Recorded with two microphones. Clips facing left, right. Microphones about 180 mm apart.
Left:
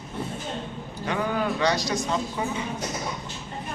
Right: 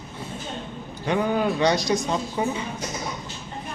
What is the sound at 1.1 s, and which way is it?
Speech, 20° right (ahead or behind).